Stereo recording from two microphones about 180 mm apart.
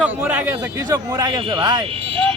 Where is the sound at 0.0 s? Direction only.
10° right (ahead or behind).